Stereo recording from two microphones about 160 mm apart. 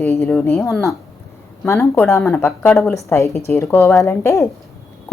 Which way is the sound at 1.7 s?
15° left (ahead or behind).